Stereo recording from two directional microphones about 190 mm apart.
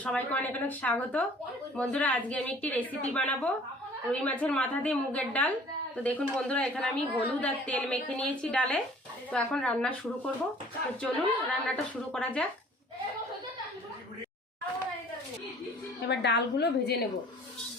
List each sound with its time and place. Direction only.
0.0 s a woman's voice: 5° left (ahead or behind)
16.0 s a woman's voice: 65° left (ahead or behind)